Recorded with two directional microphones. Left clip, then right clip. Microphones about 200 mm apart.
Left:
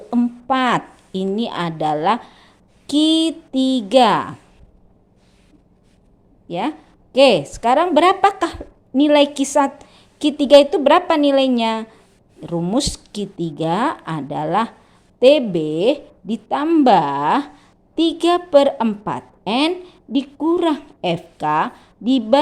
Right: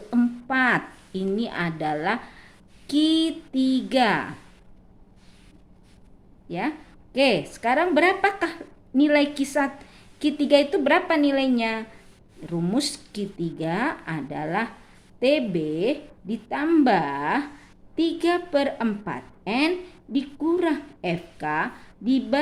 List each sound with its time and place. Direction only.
0.1 s a woman's voice: 25° left (ahead or behind)
6.5 s a woman's voice: 30° left (ahead or behind)